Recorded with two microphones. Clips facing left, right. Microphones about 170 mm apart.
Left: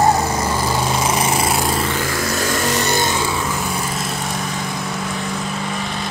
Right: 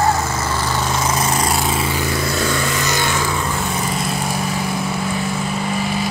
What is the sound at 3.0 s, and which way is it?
Vehicle, 20° left (ahead or behind).